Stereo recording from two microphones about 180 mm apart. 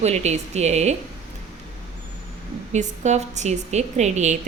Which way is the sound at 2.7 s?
40° right (ahead or behind).